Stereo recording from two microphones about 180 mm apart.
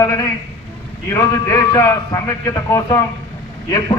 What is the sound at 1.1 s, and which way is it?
A man's voice, 15° left (ahead or behind).